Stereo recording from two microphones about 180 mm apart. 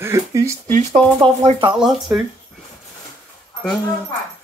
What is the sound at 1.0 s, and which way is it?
Speech, 5° left (ahead or behind).